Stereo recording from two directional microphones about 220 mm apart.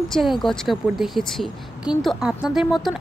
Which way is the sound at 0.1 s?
Centre (ahead or behind).